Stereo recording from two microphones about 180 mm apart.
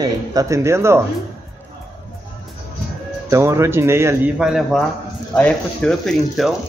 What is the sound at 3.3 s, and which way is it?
A man's voice, 15° right (ahead or behind).